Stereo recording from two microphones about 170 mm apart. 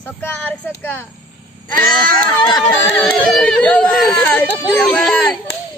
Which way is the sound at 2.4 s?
25° left (ahead or behind).